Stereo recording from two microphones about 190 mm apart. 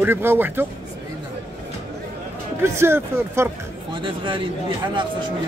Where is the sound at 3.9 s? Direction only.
25° right (ahead or behind).